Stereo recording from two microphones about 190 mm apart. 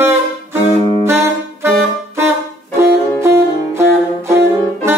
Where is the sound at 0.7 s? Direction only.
30° left (ahead or behind).